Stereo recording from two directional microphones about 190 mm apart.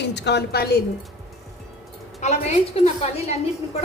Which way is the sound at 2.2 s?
40° left (ahead or behind).